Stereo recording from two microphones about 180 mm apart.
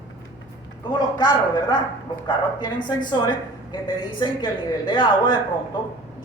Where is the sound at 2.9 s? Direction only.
25° left (ahead or behind).